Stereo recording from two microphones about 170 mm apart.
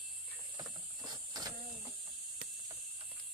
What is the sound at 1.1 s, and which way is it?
Vehicle, 25° right (ahead or behind).